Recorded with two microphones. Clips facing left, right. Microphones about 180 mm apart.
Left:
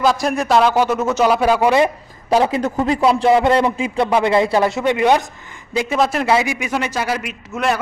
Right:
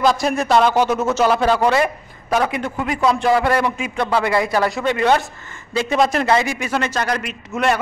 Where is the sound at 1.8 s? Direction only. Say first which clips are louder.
Left 3 dB; 20° left (ahead or behind).